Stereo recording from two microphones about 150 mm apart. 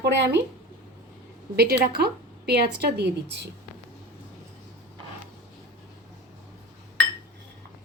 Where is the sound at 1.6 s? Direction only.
90° right.